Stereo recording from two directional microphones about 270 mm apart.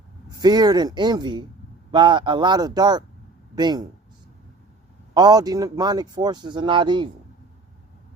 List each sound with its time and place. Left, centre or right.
0.3 s speech: centre
5.1 s speech: centre